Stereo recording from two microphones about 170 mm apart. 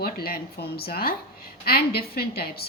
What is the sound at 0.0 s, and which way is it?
A woman's voice, 65° left (ahead or behind).